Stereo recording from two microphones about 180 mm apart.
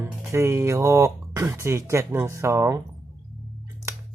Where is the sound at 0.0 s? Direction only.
15° right (ahead or behind).